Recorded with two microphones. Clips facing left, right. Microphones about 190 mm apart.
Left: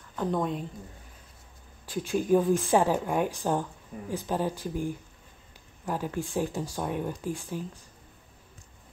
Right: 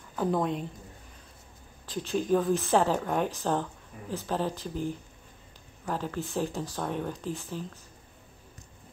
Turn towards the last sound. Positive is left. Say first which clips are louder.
# left 2 dB
turn(degrees=10)  # may be behind; listen again after turning